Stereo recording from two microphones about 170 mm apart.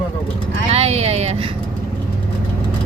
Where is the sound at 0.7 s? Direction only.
40° right (ahead or behind).